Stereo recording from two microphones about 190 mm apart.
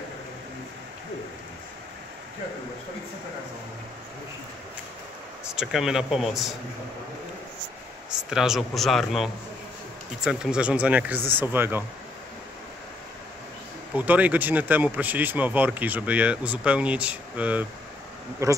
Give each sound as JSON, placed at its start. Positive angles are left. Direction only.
{"t": 5.5, "sound": "speech", "side_deg": -5}
{"t": 8.3, "sound": "speech", "side_deg": 0}
{"t": 13.9, "sound": "speech", "side_deg": -10}